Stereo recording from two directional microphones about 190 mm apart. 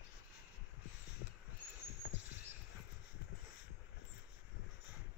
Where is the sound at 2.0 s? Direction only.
60° left (ahead or behind).